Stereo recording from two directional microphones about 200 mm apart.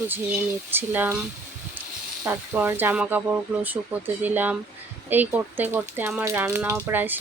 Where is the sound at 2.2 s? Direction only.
10° right (ahead or behind).